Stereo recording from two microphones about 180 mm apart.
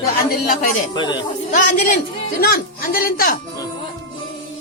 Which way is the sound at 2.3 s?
50° left (ahead or behind).